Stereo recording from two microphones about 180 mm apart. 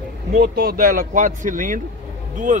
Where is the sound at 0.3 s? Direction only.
55° right (ahead or behind).